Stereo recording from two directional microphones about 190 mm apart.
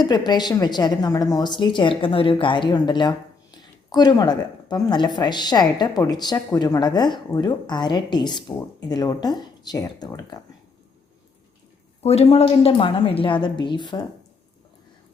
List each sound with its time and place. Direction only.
0.0 s a woman's voice: 20° left (ahead or behind)
12.0 s a woman's voice: 30° left (ahead or behind)